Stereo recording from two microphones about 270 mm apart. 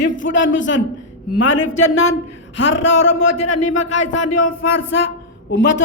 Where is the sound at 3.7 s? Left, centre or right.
Left.